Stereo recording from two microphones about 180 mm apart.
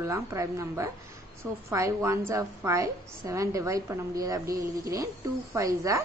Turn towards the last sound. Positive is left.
turn(degrees=-20)  # may be behind; listen again after turning